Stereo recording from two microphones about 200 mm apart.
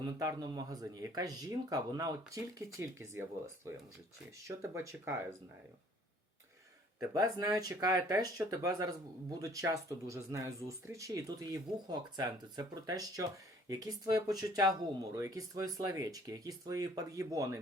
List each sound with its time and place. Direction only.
0.0 s speech: 20° right (ahead or behind)
7.1 s speech: 20° right (ahead or behind)